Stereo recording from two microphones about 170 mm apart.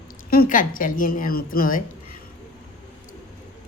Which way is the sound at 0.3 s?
55° left (ahead or behind).